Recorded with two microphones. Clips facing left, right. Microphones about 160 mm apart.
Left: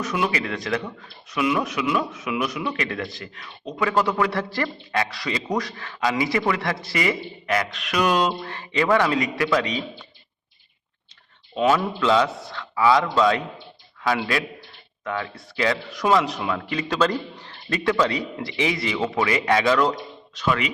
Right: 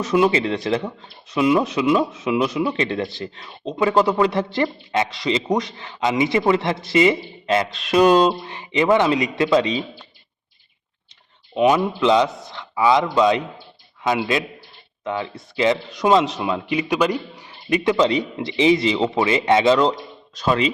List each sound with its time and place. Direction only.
0.0 s speech: 30° right (ahead or behind)
11.5 s speech: 20° right (ahead or behind)
20.3 s speech: 30° right (ahead or behind)